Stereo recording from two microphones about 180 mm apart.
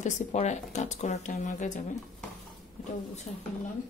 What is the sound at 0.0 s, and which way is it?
Speech, 40° left (ahead or behind).